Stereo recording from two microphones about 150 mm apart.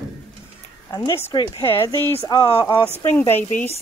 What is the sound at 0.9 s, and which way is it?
Speech, 20° left (ahead or behind).